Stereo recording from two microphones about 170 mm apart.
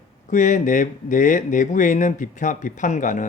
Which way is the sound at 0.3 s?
45° left (ahead or behind).